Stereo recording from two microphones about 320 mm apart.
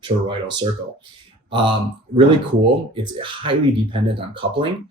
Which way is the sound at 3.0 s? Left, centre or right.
Centre.